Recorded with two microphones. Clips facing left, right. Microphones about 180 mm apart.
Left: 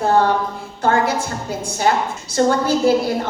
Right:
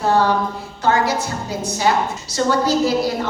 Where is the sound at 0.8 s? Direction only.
50° left (ahead or behind).